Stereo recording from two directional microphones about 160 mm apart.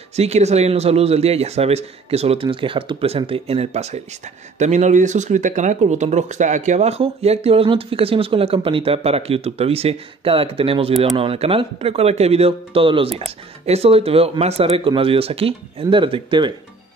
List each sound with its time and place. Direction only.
0.1 s speech: 45° right (ahead or behind)